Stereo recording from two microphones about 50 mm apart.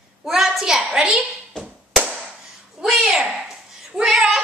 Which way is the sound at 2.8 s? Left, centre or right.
Centre.